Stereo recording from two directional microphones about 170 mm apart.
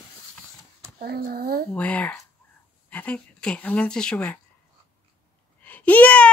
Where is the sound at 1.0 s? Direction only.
60° right (ahead or behind).